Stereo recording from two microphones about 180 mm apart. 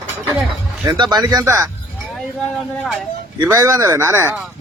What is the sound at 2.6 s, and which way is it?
Speech, centre (ahead or behind).